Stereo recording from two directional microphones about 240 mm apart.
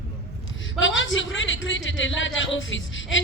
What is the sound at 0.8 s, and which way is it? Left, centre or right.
Speech, left.